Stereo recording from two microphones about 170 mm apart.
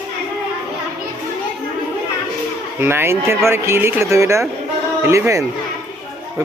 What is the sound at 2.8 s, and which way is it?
A man's voice, 15° right (ahead or behind).